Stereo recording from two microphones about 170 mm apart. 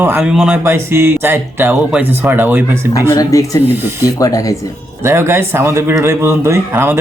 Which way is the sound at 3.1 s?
20° left (ahead or behind).